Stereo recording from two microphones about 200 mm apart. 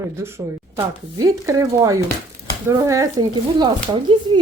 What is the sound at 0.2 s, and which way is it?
Speech, 10° right (ahead or behind).